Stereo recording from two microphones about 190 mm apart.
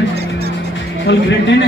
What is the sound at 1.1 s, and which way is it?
Speech, 65° left (ahead or behind).